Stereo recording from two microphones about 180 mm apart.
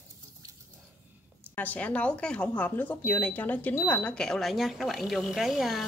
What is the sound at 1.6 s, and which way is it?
Speech, 10° left (ahead or behind).